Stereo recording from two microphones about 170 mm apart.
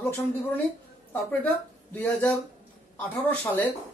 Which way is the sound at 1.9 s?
10° left (ahead or behind).